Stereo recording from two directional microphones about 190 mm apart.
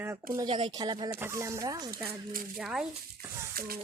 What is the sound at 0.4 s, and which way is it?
Speech, 25° right (ahead or behind).